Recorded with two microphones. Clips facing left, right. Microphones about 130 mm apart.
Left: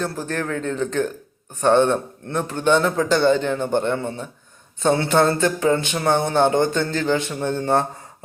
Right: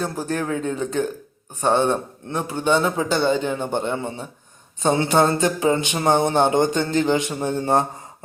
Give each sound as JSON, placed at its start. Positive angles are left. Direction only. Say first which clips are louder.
{"t": 0.0, "sound": "speech", "louder": "right 1 dB", "side_deg": -10}